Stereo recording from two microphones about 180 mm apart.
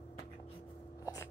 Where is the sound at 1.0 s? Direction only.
20° left (ahead or behind).